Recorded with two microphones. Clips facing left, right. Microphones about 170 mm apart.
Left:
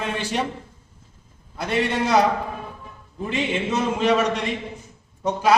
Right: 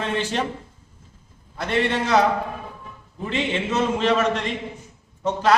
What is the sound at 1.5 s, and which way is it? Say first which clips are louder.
Speech: even; 10° left (ahead or behind).